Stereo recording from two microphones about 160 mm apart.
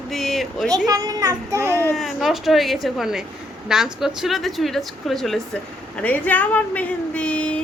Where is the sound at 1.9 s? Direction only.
Centre (ahead or behind).